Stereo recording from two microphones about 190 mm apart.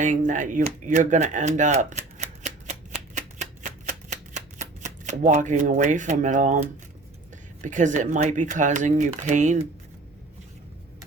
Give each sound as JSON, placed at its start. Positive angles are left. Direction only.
{"t": 0.0, "sound": "speech", "side_deg": -40}
{"t": 3.2, "sound": "shuffling cards", "side_deg": -40}
{"t": 7.6, "sound": "speech", "side_deg": -40}